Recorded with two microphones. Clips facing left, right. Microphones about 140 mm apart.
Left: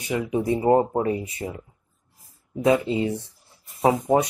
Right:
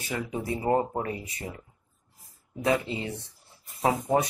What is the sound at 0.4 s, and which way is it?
Speech, 25° left (ahead or behind).